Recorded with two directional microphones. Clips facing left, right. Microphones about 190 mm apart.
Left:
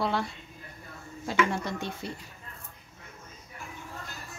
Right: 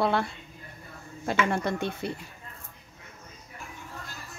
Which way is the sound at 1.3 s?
60° right (ahead or behind).